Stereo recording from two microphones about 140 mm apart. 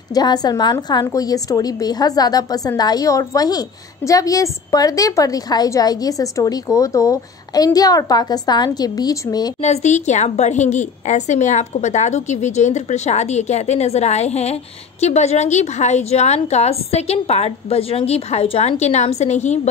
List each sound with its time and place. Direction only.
0.1 s a woman's voice: 30° left (ahead or behind)
9.6 s a woman's voice: 50° left (ahead or behind)